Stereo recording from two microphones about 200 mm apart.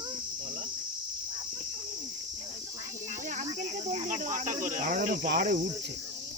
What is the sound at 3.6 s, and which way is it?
Speech, 35° right (ahead or behind).